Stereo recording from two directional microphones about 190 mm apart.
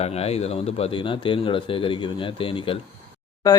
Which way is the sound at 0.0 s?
35° left (ahead or behind).